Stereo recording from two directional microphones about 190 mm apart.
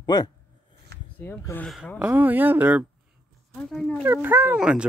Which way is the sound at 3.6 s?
5° left (ahead or behind).